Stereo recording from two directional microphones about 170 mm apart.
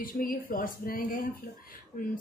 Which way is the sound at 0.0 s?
55° left (ahead or behind).